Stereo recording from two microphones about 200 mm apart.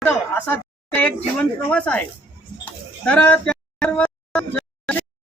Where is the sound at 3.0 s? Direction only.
10° left (ahead or behind).